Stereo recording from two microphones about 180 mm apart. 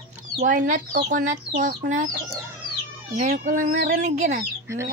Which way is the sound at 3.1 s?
45° right (ahead or behind).